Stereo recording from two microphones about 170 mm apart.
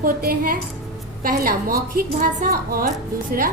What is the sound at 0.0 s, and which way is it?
A woman's voice, 60° right (ahead or behind).